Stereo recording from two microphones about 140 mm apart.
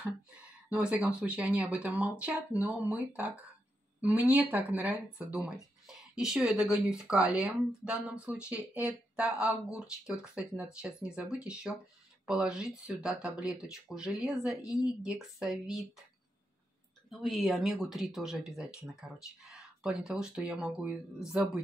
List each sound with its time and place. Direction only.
0.7 s speech: 10° right (ahead or behind)
17.1 s speech: centre (ahead or behind)